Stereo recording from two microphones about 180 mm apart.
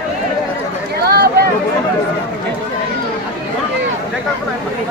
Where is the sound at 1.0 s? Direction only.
60° right (ahead or behind).